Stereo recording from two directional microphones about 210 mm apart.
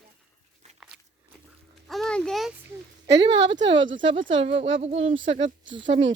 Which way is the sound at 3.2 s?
25° right (ahead or behind).